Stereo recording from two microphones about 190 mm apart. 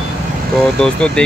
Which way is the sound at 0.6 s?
5° left (ahead or behind).